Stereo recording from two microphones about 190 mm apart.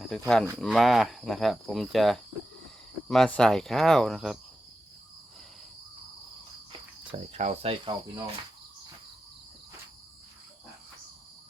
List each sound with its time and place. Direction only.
0.1 s speech: 5° left (ahead or behind)
7.2 s cricket: 35° right (ahead or behind)